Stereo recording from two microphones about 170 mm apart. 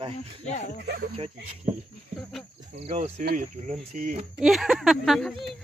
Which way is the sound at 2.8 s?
40° right (ahead or behind).